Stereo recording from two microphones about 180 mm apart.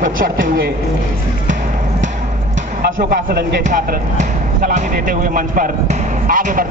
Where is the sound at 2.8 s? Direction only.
55° right (ahead or behind).